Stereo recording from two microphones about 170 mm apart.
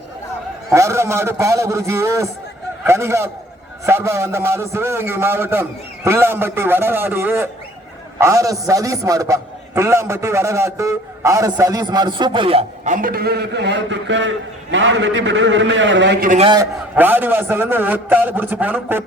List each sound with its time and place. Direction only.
0.7 s a man's voice: 15° right (ahead or behind); by 12.9 s 35° right (ahead or behind)
12.9 s a man's voice: 55° right (ahead or behind); by 16.3 s 90° right
16.9 s a man's voice: 10° right (ahead or behind)